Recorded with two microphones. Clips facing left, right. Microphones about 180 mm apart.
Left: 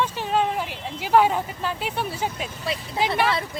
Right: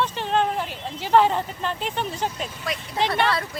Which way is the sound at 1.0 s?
10° left (ahead or behind).